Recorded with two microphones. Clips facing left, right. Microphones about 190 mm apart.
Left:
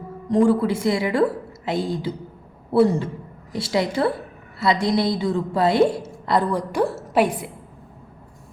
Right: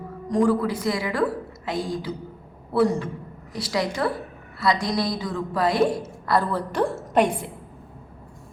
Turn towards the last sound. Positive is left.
turn(degrees=5)  # may be behind; listen again after turning